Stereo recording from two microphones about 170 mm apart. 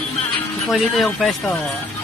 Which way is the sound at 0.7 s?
Centre (ahead or behind).